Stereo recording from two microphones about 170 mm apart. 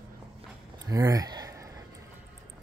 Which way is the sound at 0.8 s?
20° right (ahead or behind).